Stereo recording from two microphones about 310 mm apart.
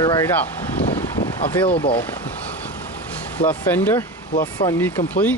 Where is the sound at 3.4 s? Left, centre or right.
Centre.